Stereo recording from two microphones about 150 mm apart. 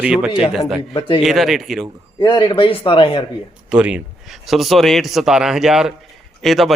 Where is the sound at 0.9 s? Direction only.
35° left (ahead or behind).